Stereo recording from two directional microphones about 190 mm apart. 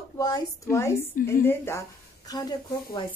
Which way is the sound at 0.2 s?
15° left (ahead or behind).